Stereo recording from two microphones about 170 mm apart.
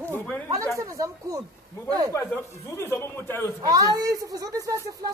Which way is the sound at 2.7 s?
15° left (ahead or behind).